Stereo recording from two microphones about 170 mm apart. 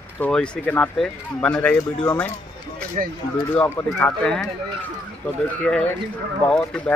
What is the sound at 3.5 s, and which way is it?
Speech, 10° left (ahead or behind).